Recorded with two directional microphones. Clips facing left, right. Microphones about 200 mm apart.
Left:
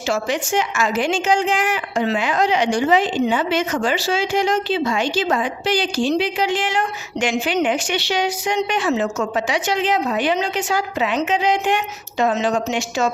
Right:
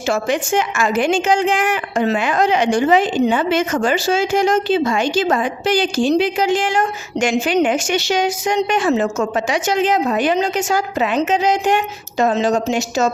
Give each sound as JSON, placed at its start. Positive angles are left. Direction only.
{"t": 0.1, "sound": "a woman's voice", "side_deg": -55}